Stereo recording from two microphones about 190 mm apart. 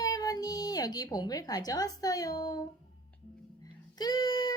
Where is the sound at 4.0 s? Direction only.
20° left (ahead or behind).